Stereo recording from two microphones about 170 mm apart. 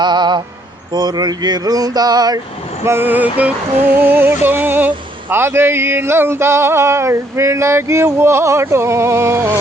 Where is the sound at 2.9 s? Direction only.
10° right (ahead or behind).